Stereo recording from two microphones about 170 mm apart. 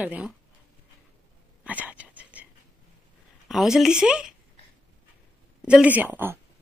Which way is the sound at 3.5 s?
Centre (ahead or behind).